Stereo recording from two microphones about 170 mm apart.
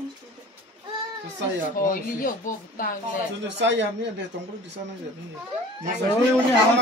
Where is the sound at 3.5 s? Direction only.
90° right.